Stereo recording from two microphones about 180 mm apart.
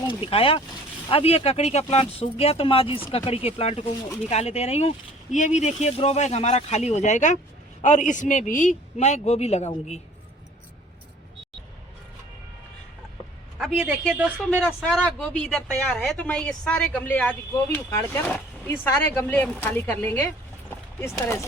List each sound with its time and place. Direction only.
0.1 s speech: 30° left (ahead or behind)
13.6 s speech: 5° right (ahead or behind)
14.8 s speech: 5° left (ahead or behind)